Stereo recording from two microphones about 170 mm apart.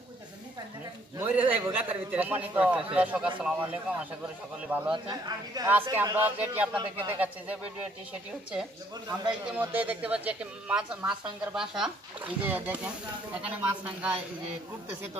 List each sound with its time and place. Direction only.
1.1 s a woman's voice: 10° right (ahead or behind)
4.9 s a man's voice: 25° right (ahead or behind)
5.7 s a woman's voice: 10° right (ahead or behind)
6.8 s a man's voice: 30° right (ahead or behind)
9.5 s a woman's voice: 10° right (ahead or behind)